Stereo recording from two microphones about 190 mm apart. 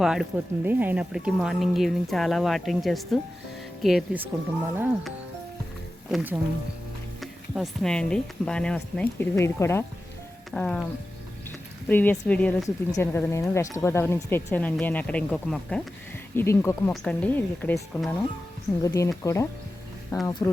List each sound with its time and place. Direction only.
0.0 s speech: 5° right (ahead or behind)
6.1 s speech: 5° right (ahead or behind)
11.9 s a woman's voice: 10° left (ahead or behind)